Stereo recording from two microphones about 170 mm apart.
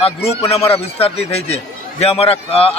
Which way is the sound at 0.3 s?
35° left (ahead or behind).